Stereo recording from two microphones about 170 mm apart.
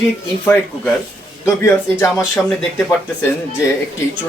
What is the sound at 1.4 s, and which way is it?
Speech, 15° left (ahead or behind).